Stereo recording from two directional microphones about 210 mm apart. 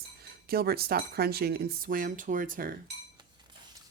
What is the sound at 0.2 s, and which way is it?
Speech, 45° right (ahead or behind).